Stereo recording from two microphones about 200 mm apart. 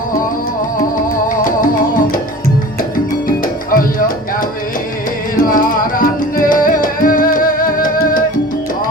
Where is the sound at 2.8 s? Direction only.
45° left (ahead or behind).